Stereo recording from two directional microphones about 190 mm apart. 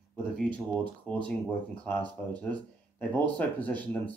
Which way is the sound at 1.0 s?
5° left (ahead or behind).